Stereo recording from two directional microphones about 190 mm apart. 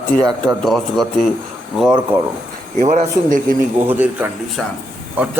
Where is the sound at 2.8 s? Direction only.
35° right (ahead or behind).